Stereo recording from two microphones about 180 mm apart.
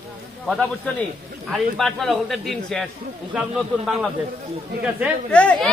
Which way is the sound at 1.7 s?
Centre (ahead or behind).